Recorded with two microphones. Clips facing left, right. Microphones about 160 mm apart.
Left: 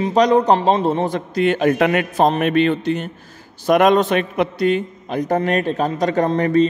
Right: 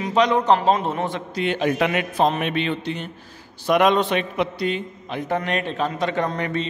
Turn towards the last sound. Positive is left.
turn(degrees=40)  # may be behind; listen again after turning